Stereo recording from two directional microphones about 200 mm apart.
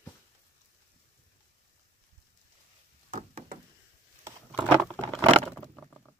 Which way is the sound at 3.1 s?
45° right (ahead or behind).